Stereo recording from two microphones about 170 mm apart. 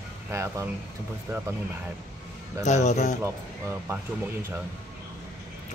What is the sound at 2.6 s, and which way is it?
Speech, 45° left (ahead or behind).